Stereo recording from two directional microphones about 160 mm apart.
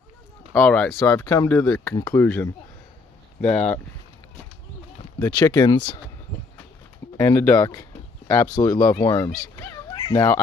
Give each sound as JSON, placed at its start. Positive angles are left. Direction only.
{"t": 0.5, "sound": "speech", "side_deg": 10}
{"t": 5.2, "sound": "speech", "side_deg": 25}
{"t": 7.2, "sound": "speech", "side_deg": 15}